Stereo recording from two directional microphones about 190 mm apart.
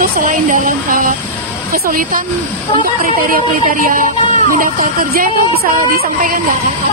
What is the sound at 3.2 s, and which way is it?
Speech, 45° right (ahead or behind).